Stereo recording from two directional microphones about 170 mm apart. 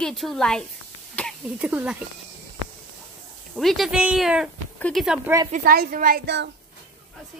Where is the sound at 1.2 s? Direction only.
10° left (ahead or behind).